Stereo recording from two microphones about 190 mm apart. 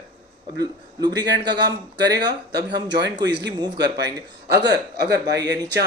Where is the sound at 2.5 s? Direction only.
65° right (ahead or behind).